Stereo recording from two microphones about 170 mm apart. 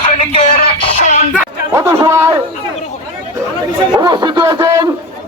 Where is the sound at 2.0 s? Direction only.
15° right (ahead or behind).